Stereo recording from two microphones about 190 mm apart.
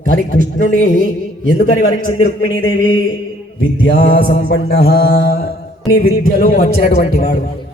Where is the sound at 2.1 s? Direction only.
30° left (ahead or behind).